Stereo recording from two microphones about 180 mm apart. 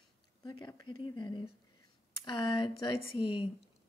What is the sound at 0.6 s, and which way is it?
Speech, 25° left (ahead or behind).